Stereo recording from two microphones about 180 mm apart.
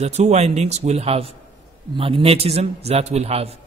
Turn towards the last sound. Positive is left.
turn(degrees=-35)  # may be behind; listen again after turning